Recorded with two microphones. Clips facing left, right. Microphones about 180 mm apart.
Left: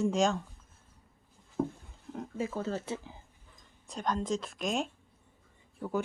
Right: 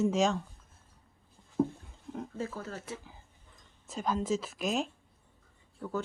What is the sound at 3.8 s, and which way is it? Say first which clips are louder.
Speech: right 1 dB; 5° right (ahead or behind).